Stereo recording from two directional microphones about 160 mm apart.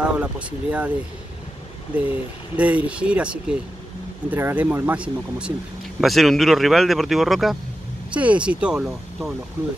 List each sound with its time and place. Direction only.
0.2 s speech: 10° right (ahead or behind)
2.0 s speech: 10° right (ahead or behind)